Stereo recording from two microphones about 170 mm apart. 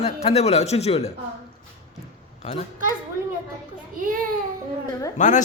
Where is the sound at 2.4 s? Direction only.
40° left (ahead or behind).